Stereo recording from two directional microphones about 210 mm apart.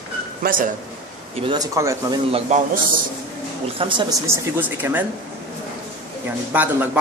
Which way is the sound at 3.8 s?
25° right (ahead or behind).